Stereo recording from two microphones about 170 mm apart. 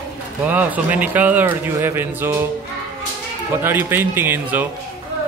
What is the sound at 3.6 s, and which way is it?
A man's voice, 15° right (ahead or behind).